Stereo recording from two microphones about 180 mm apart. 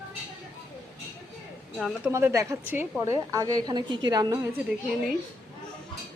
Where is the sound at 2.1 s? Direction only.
15° right (ahead or behind).